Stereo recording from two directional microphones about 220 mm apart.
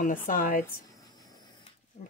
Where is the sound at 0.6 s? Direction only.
15° left (ahead or behind).